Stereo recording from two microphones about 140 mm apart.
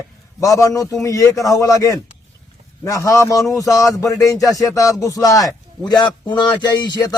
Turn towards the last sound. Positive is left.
turn(degrees=30)  # may be behind; listen again after turning